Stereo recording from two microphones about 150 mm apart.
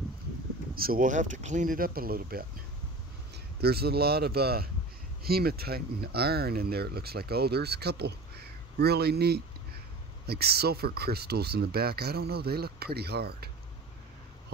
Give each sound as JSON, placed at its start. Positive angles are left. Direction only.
{"t": 0.7, "sound": "speech", "side_deg": -75}
{"t": 3.6, "sound": "speech", "side_deg": -90}